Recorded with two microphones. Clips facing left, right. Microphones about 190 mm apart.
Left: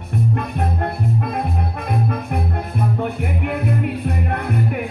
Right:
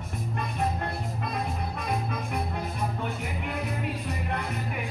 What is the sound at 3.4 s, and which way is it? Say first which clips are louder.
Music: left 11 dB; 60° left (ahead or behind).